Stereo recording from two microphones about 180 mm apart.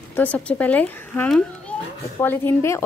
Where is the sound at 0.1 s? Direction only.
10° left (ahead or behind).